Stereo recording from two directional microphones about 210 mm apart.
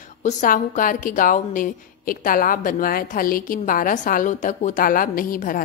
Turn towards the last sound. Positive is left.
turn(degrees=40)  # may be behind; listen again after turning